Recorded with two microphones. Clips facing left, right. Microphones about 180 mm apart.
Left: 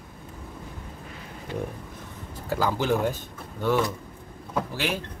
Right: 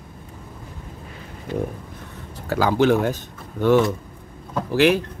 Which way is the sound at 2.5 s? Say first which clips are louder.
Right 7 dB; 75° right (ahead or behind).